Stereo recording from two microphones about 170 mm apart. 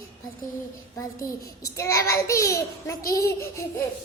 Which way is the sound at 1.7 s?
20° left (ahead or behind).